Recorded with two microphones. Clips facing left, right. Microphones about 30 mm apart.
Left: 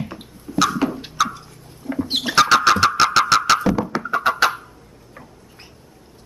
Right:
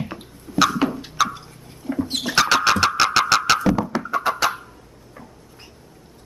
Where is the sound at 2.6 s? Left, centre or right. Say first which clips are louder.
Left 2 dB; centre.